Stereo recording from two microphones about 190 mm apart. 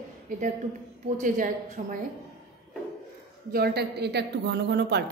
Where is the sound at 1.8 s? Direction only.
45° right (ahead or behind).